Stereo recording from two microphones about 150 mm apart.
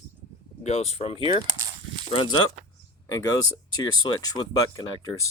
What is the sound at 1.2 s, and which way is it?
Speech, 35° right (ahead or behind).